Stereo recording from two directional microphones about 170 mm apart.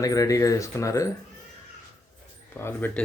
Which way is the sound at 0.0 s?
20° left (ahead or behind).